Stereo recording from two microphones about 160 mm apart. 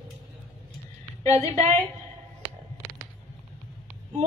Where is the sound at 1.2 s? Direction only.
20° left (ahead or behind).